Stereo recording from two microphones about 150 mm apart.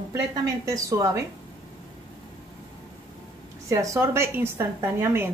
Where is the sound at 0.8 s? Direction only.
20° right (ahead or behind).